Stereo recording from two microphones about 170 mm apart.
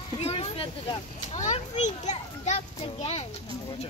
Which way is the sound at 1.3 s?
40° left (ahead or behind).